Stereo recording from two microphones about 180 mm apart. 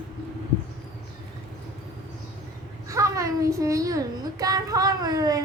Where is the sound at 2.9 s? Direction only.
15° right (ahead or behind).